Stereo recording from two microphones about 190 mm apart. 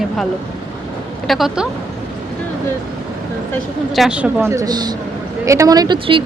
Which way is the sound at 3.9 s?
5° right (ahead or behind).